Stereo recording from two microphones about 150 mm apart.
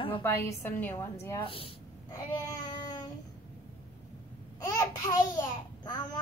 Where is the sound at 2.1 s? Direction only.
25° left (ahead or behind).